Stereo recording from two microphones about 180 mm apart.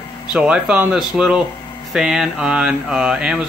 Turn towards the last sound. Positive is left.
turn(degrees=-5)  # may be behind; listen again after turning